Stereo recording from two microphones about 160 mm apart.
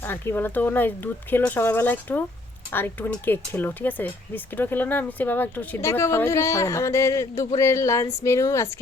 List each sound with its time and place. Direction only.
0.0 s speech: 15° left (ahead or behind)